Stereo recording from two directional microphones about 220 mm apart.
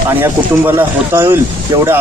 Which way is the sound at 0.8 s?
10° right (ahead or behind).